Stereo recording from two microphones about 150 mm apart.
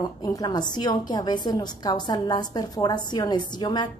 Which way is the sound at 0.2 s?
25° left (ahead or behind).